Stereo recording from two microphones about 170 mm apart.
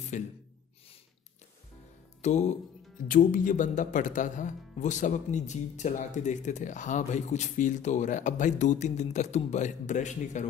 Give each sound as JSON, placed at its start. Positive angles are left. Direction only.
{"t": 0.1, "sound": "speech", "side_deg": 45}
{"t": 2.2, "sound": "speech", "side_deg": 45}